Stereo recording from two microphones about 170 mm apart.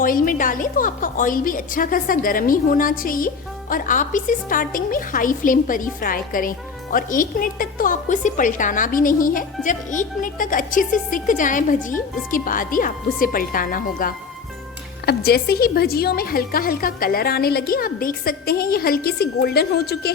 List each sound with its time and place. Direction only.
0.0 s a woman's voice: 55° left (ahead or behind)
15.0 s a woman's voice: 65° left (ahead or behind)